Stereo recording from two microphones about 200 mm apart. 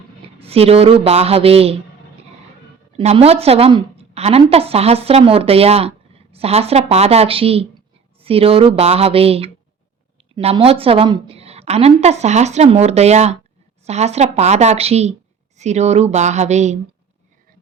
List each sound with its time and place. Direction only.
0.3 s speech: 30° right (ahead or behind)
3.0 s a woman's voice: 30° right (ahead or behind)